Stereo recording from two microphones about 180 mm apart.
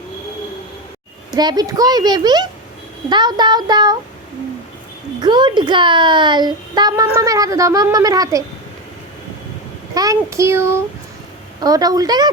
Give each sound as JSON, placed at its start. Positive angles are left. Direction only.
{"t": 1.3, "sound": "a child's voice", "side_deg": -20}
{"t": 5.2, "sound": "a child's voice", "side_deg": -25}
{"t": 9.9, "sound": "a child's voice", "side_deg": -20}